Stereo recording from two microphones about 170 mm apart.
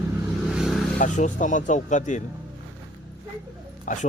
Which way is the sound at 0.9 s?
45° left (ahead or behind).